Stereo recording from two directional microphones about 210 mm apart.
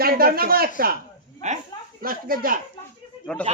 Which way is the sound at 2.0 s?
45° right (ahead or behind).